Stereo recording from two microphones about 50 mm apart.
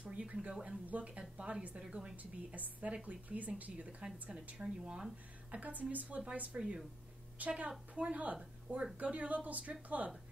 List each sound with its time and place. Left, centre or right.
0.0 s a sound: right
0.8 s a woman's voice: right
1.8 s a woman's voice: centre
2.5 s a woman's voice: right
5.5 s a woman's voice: right